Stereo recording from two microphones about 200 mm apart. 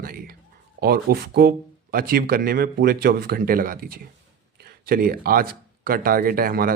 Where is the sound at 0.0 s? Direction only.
45° right (ahead or behind).